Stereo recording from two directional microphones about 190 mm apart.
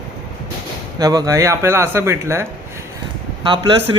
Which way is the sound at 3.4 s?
25° right (ahead or behind).